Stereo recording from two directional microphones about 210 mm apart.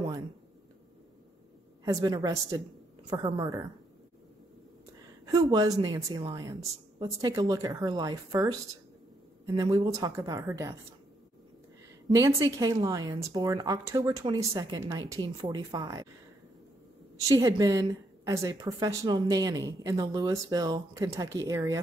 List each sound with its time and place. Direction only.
1.9 s speech: 15° right (ahead or behind)
5.2 s speech: 20° right (ahead or behind)
9.6 s speech: 15° right (ahead or behind)
12.2 s speech: 15° right (ahead or behind)
17.2 s speech: 15° right (ahead or behind)